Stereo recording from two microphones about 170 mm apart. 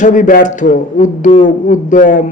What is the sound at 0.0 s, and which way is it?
A man's voice, 50° left (ahead or behind).